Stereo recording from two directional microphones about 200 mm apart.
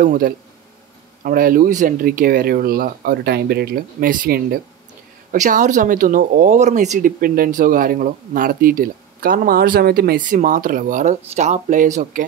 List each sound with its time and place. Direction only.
0.0 s speech: 40° right (ahead or behind)